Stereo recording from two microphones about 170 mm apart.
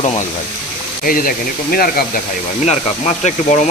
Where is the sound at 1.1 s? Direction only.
55° left (ahead or behind).